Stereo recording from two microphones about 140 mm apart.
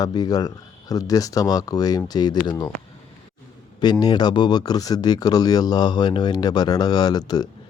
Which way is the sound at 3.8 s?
30° left (ahead or behind).